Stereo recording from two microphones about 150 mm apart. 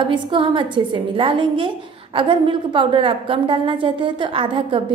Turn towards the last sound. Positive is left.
turn(degrees=-35)  # may be behind; listen again after turning